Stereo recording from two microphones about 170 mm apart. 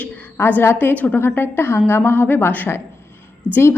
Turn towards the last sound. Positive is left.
turn(degrees=10)  # may be behind; listen again after turning